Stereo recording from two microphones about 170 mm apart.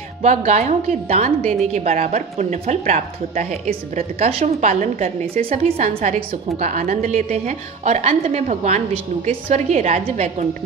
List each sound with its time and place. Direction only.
0.2 s a woman's voice: 45° right (ahead or behind)
5.6 s a woman's voice: 50° right (ahead or behind)